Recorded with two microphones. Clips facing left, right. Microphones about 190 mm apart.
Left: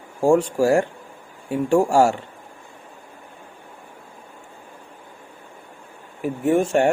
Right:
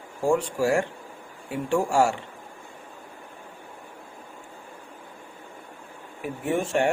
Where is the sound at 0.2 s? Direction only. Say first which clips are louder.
Left 6 dB; 45° left (ahead or behind).